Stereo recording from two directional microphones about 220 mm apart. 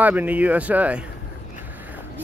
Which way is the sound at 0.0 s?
5° right (ahead or behind).